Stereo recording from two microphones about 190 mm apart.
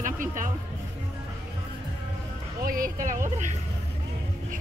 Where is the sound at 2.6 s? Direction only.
50° right (ahead or behind).